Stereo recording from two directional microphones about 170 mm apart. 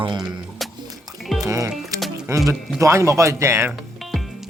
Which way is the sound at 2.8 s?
15° right (ahead or behind).